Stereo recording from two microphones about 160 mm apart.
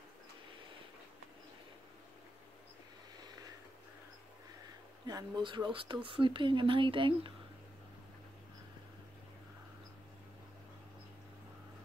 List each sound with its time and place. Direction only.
5.0 s speech: 30° right (ahead or behind)